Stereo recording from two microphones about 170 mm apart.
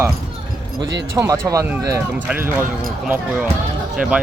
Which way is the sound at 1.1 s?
20° right (ahead or behind).